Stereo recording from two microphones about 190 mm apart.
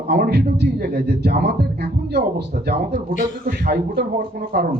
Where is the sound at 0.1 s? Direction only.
60° right (ahead or behind).